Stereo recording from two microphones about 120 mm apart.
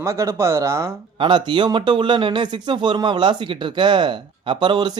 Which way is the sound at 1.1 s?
40° right (ahead or behind).